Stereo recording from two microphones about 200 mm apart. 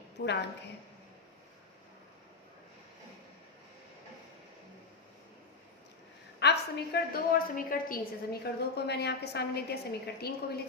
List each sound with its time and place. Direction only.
0.2 s a woman's voice: 55° left (ahead or behind)
6.4 s a woman's voice: 55° left (ahead or behind)